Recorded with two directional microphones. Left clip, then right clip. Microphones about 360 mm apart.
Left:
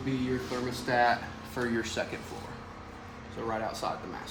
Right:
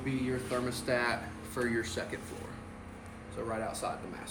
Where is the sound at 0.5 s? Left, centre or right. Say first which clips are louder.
Left 3 dB; centre.